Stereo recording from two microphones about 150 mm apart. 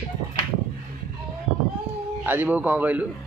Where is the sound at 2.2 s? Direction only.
10° right (ahead or behind).